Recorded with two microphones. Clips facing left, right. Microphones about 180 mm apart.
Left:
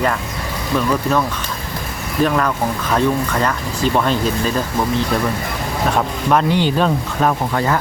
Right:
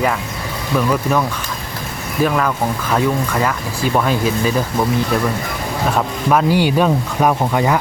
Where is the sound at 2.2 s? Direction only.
Centre (ahead or behind).